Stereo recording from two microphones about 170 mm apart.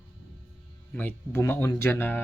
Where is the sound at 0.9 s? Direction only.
10° left (ahead or behind).